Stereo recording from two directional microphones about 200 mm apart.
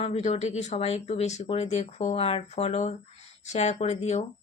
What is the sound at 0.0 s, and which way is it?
A woman's voice, 35° left (ahead or behind).